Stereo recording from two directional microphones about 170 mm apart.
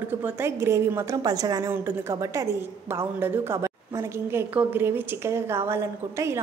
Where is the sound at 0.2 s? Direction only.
15° right (ahead or behind).